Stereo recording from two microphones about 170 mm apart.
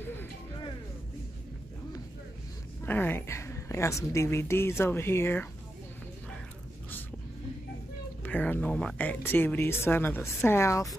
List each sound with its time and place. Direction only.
2.8 s speech: 10° left (ahead or behind)
8.2 s speech: 10° left (ahead or behind)